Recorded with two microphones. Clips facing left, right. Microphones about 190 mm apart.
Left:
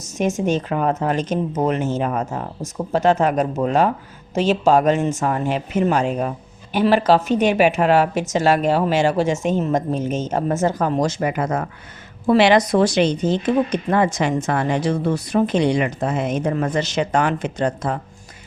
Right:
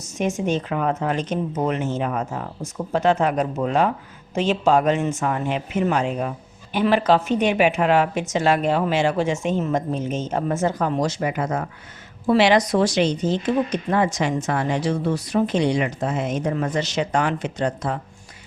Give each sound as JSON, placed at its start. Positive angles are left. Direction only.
{"t": 0.2, "sound": "a woman's voice", "side_deg": 45}